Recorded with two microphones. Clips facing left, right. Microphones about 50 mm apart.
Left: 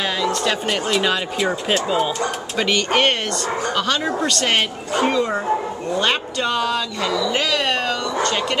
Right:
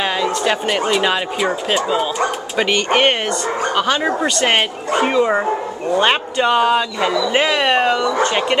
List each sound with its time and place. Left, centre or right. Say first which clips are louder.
0.3 s speech: right 3 dB; centre